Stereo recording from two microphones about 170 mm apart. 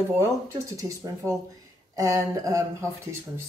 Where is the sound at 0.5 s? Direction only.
20° right (ahead or behind).